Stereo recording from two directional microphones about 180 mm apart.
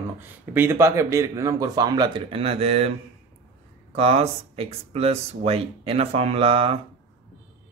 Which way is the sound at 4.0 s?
35° right (ahead or behind).